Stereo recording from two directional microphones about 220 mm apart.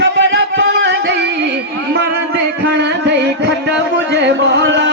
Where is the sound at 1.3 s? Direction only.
50° right (ahead or behind).